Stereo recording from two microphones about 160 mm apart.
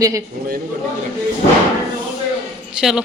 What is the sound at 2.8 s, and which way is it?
Speech, 5° right (ahead or behind).